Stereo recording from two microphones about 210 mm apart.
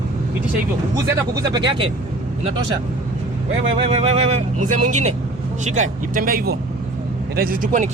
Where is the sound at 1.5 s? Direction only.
20° right (ahead or behind).